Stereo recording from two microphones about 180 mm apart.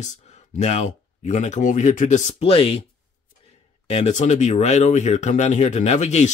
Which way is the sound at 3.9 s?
40° left (ahead or behind).